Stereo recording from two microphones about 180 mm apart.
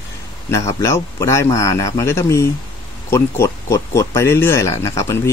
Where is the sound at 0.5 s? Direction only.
15° left (ahead or behind).